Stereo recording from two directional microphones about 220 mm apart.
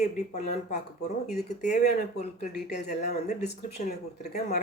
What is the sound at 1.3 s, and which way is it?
Speech, 30° left (ahead or behind).